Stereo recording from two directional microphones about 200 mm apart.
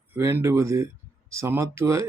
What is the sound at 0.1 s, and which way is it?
Speech, 10° right (ahead or behind).